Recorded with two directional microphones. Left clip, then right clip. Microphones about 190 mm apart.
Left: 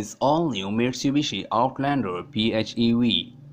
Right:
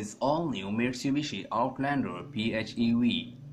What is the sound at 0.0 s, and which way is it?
Speech, 40° left (ahead or behind).